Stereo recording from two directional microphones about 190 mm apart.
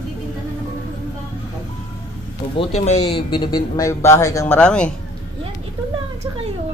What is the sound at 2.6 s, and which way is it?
Speech, 35° left (ahead or behind).